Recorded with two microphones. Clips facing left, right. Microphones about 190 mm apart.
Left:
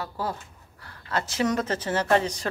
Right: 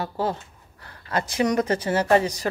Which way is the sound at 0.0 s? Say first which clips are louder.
Right 5 dB; 25° right (ahead or behind).